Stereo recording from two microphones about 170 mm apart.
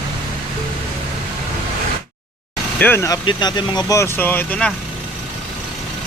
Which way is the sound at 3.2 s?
25° left (ahead or behind).